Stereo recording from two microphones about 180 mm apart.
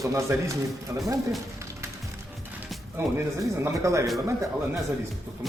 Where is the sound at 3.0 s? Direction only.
15° right (ahead or behind).